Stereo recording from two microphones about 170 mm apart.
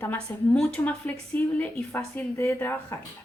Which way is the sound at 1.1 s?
20° left (ahead or behind).